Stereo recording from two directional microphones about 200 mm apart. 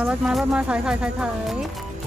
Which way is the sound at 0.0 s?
5° right (ahead or behind).